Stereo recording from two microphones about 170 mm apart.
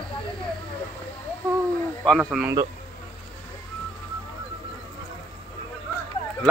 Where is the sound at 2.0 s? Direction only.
Centre (ahead or behind).